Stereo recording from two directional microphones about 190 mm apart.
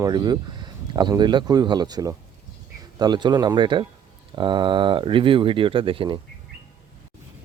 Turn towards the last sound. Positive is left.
turn(degrees=-25)  # may be behind; listen again after turning